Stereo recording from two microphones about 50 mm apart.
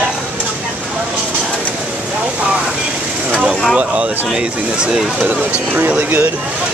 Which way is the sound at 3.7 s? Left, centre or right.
Right.